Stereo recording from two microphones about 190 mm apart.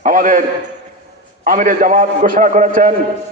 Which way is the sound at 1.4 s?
45° right (ahead or behind).